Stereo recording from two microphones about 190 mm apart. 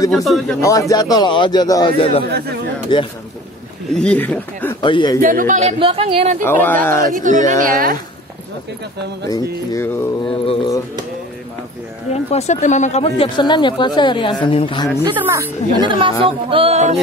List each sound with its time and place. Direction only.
0.1 s speech: centre (ahead or behind)
0.6 s speech: 15° left (ahead or behind)
2.2 s speech: 60° right (ahead or behind)
2.9 s speech: 25° left (ahead or behind)
4.0 s speech: 5° left (ahead or behind)
4.8 s speech: 25° left (ahead or behind)
5.2 s speech: 45° right (ahead or behind); by 6.3 s 30° right (ahead or behind)
6.4 s speech: 10° left (ahead or behind)
7.2 s a woman's voice: 40° right (ahead or behind)
9.3 s speech: 15° left (ahead or behind)
10.2 s speech: 30° left (ahead or behind)
12.1 s speech: 35° left (ahead or behind)
15.9 s speech: 25° right (ahead or behind)